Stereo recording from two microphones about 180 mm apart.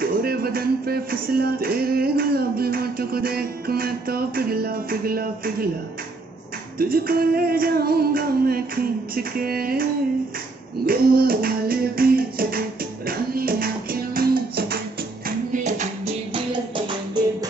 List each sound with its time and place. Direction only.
0.0 s music: 55° right (ahead or behind)
6.8 s music: 55° right (ahead or behind)
10.9 s music: 55° right (ahead or behind)
15.2 s music: 45° right (ahead or behind)